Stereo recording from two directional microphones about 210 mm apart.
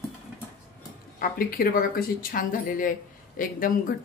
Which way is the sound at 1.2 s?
45° left (ahead or behind).